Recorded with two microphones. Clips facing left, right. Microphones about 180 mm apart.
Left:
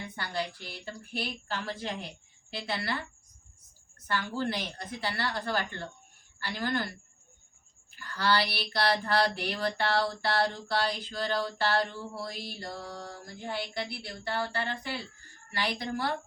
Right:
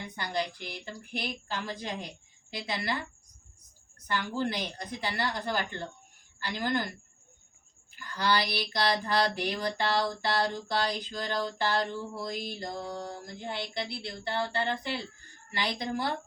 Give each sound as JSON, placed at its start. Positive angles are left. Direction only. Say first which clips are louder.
{"t": 0.2, "sound": "speech", "louder": "right 2 dB", "side_deg": -20}
{"t": 4.1, "sound": "speech", "louder": "even", "side_deg": -20}
{"t": 7.9, "sound": "speech", "louder": "even", "side_deg": -15}
{"t": 11.4, "sound": "mantra", "louder": "left 1 dB", "side_deg": -20}